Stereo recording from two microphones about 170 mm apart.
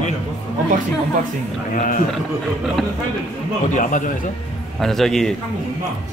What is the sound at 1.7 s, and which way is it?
Speech, 50° left (ahead or behind).